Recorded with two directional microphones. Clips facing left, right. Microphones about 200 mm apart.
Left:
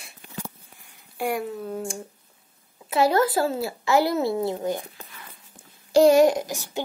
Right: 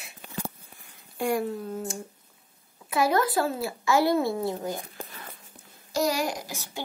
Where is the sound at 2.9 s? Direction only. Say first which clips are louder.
Left 4 dB; 25° left (ahead or behind).